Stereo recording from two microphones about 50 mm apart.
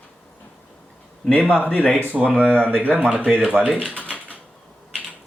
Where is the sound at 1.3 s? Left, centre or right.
Left.